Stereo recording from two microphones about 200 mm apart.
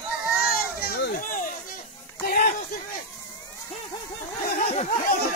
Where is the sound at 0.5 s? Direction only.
50° left (ahead or behind).